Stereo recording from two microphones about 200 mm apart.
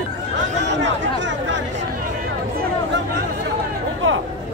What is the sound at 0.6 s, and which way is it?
Chatter, 60° right (ahead or behind).